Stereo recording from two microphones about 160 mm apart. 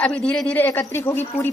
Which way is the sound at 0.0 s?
5° left (ahead or behind).